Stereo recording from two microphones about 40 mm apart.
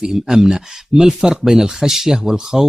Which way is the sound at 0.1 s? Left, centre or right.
Centre.